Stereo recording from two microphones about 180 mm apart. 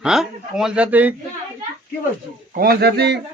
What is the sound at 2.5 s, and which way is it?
Speech, 55° right (ahead or behind).